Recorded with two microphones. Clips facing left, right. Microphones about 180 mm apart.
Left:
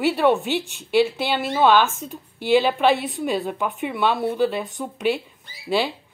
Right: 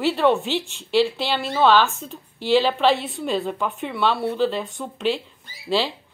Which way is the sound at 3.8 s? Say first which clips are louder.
Left 1 dB; 15° left (ahead or behind).